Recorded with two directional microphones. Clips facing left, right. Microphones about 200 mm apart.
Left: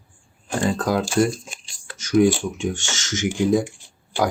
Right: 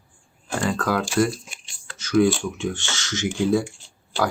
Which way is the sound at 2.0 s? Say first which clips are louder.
Left 2 dB; 20° left (ahead or behind).